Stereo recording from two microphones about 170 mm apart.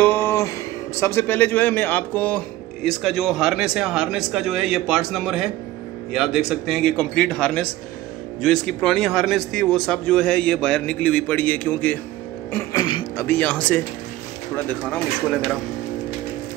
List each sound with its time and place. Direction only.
0.0 s a sound: 15° left (ahead or behind)
0.9 s speech: 15° left (ahead or behind)
12.7 s speech: 25° left (ahead or behind); by 15.0 s 10° left (ahead or behind)